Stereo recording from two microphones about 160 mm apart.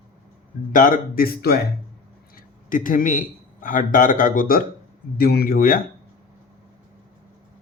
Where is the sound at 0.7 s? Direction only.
60° left (ahead or behind); by 1.6 s 75° left (ahead or behind).